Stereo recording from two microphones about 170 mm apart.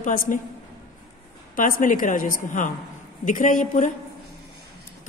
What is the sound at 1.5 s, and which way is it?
A woman's voice, 55° left (ahead or behind).